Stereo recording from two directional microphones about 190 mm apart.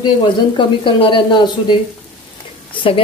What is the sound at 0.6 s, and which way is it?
Speech, 25° left (ahead or behind).